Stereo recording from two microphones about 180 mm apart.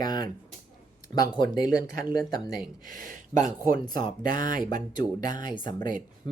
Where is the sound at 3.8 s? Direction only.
25° left (ahead or behind).